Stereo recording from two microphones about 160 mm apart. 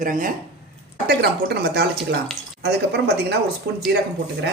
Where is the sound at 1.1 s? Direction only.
90° right.